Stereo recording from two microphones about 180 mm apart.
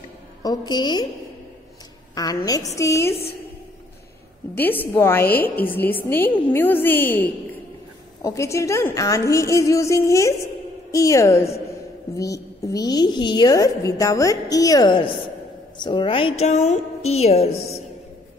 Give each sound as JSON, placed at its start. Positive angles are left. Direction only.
{"t": 0.4, "sound": "a woman's voice", "side_deg": 20}
{"t": 2.1, "sound": "a woman's voice", "side_deg": 20}
{"t": 4.6, "sound": "a woman's voice", "side_deg": 10}